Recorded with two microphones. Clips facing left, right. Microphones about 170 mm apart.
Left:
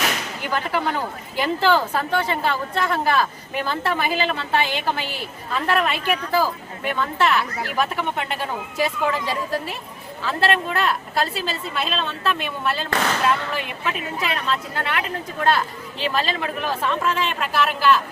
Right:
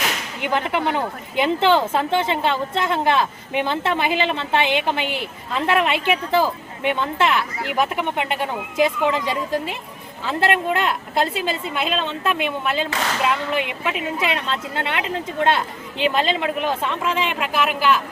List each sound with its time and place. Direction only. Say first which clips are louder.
0.4 s a woman's voice: right 3 dB; 20° right (ahead or behind)